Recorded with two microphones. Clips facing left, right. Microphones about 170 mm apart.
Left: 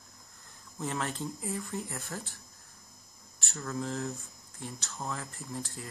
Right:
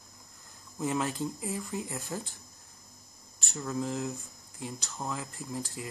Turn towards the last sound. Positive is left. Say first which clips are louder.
# right 2 dB
turn(degrees=-10)  # may be behind; listen again after turning